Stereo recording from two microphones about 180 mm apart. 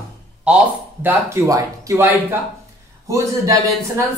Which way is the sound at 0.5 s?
5° right (ahead or behind).